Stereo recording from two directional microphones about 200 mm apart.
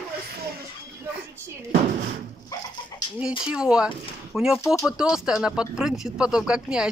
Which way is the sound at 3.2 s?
5° right (ahead or behind).